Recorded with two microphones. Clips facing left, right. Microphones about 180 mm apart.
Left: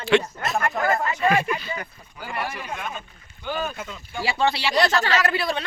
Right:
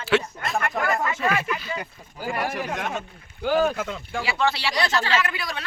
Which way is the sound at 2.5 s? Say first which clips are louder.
Right 4 dB; 70° right (ahead or behind).